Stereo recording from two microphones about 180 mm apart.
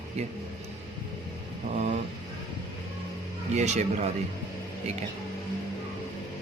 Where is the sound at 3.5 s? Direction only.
40° right (ahead or behind).